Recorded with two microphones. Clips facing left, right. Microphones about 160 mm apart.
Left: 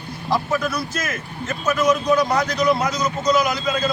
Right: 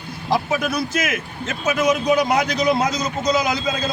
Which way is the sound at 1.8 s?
20° right (ahead or behind).